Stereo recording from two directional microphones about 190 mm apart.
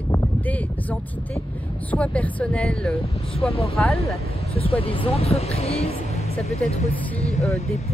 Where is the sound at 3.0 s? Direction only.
30° left (ahead or behind).